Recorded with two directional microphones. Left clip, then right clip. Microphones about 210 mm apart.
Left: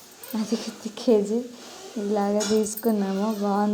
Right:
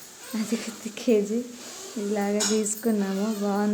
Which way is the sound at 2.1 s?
5° left (ahead or behind).